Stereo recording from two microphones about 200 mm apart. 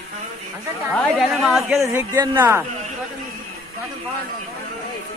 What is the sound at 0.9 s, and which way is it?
Speech, centre (ahead or behind).